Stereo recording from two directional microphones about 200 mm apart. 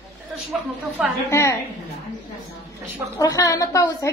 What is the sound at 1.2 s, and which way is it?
Speech, 15° left (ahead or behind).